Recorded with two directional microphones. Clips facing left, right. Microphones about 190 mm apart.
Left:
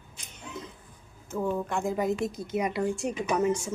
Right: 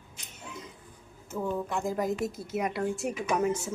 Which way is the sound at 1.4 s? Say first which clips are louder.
Left 2 dB; centre (ahead or behind).